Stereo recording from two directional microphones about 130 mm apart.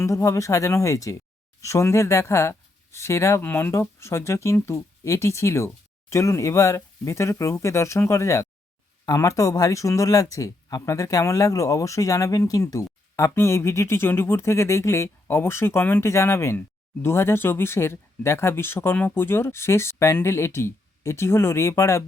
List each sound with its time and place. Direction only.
0.0 s speech: 25° left (ahead or behind)